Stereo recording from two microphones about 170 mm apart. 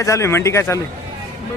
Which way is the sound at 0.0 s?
15° left (ahead or behind).